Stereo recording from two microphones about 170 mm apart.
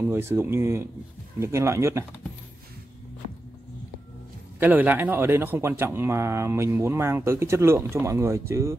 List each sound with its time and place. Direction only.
0.0 s speech: 15° right (ahead or behind)
4.6 s speech: 10° right (ahead or behind)